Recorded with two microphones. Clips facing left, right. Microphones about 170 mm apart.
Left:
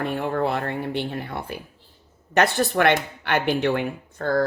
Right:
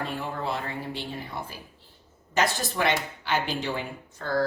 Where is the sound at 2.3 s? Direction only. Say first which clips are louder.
Left 6 dB; 60° left (ahead or behind).